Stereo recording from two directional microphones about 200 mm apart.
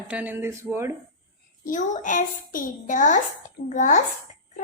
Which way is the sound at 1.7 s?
40° left (ahead or behind).